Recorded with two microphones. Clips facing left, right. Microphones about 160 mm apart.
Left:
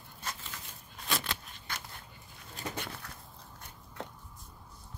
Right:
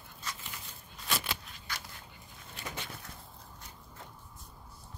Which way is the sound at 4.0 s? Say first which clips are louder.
Left 9 dB; 75° left (ahead or behind).